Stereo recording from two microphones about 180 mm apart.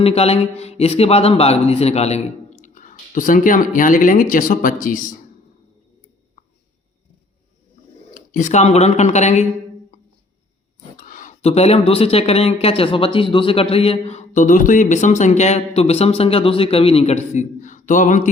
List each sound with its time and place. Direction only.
0.0 s a man's voice: 35° left (ahead or behind)
8.1 s a man's voice: 45° left (ahead or behind)
10.9 s a man's voice: 50° left (ahead or behind)